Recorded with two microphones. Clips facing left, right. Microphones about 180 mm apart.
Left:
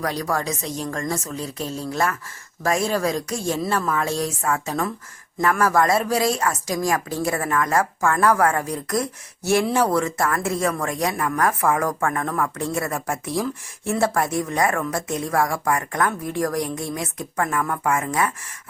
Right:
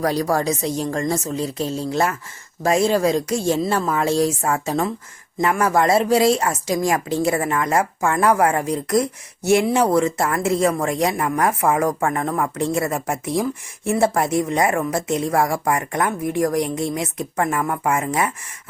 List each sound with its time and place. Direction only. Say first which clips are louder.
0.0 s speech: right 5 dB; 30° right (ahead or behind)